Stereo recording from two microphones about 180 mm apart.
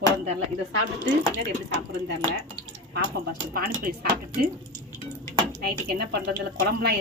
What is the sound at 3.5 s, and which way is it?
Speech, 55° right (ahead or behind).